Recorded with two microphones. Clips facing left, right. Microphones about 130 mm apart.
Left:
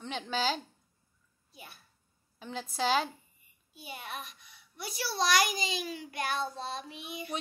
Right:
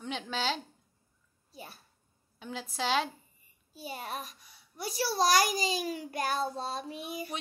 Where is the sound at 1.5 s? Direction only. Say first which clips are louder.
Right 4 dB; 35° right (ahead or behind).